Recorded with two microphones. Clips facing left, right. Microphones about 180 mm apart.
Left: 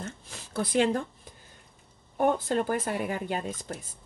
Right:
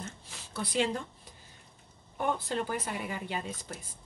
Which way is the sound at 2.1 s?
50° left (ahead or behind).